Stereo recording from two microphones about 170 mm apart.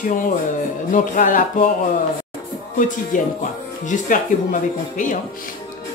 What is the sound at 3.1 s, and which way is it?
Speech, 50° left (ahead or behind).